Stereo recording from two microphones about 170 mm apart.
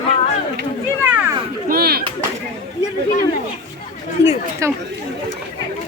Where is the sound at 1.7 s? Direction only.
65° right (ahead or behind).